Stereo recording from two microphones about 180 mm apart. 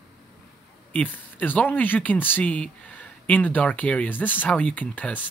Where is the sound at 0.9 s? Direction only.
10° left (ahead or behind).